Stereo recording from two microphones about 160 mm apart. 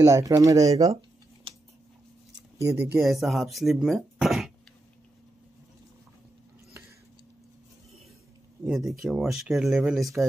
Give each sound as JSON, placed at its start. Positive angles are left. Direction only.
{"t": 0.0, "sound": "speech", "side_deg": -20}
{"t": 2.6, "sound": "speech", "side_deg": -15}
{"t": 3.0, "sound": "speech", "side_deg": 0}
{"t": 8.6, "sound": "speech", "side_deg": 0}